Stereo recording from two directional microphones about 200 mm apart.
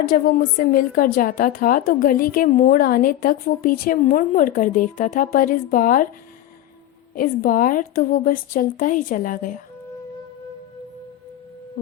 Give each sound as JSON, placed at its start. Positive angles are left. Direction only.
{"t": 0.0, "sound": "a woman's voice", "side_deg": 45}
{"t": 7.2, "sound": "a woman's voice", "side_deg": 45}